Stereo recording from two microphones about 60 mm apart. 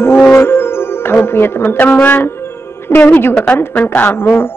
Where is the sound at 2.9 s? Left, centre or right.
Left.